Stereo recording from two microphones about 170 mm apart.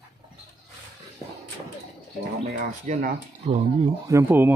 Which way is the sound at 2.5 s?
50° right (ahead or behind).